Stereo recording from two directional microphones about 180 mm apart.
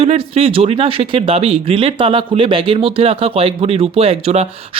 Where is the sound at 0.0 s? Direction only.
35° right (ahead or behind).